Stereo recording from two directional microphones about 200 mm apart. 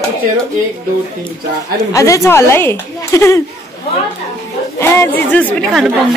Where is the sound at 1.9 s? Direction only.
15° left (ahead or behind).